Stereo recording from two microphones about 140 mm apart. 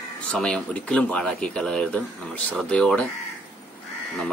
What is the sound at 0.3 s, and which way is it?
Speech, 5° left (ahead or behind).